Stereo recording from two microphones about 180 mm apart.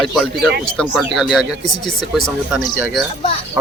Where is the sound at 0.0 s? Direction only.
Centre (ahead or behind).